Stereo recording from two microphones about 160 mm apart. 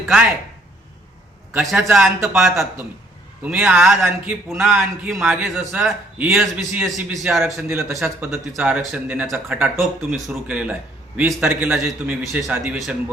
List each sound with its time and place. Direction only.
1.5 s a man's voice: 10° right (ahead or behind)
3.4 s a man's voice: 10° right (ahead or behind)
7.7 s a man's voice: 15° right (ahead or behind)